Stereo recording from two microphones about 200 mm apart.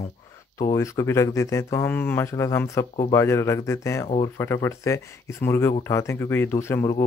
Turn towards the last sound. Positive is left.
turn(degrees=15)  # may be behind; listen again after turning